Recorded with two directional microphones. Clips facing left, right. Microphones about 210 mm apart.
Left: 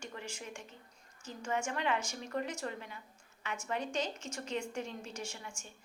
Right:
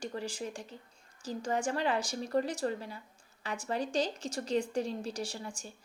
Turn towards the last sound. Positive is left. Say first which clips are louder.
# right 6 dB
turn(degrees=-35)  # may be behind; listen again after turning